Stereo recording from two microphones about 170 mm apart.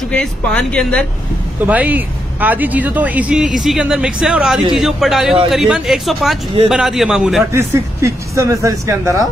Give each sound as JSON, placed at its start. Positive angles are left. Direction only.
{"t": 0.1, "sound": "speech", "side_deg": 5}
{"t": 1.7, "sound": "speech", "side_deg": -10}
{"t": 7.5, "sound": "speech", "side_deg": -15}